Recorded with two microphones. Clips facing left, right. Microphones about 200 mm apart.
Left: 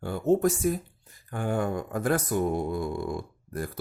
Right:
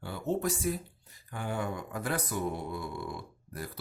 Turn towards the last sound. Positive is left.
turn(degrees=50)  # may be behind; listen again after turning